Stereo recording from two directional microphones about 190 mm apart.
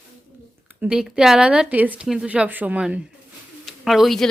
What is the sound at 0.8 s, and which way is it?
Speech, 5° right (ahead or behind).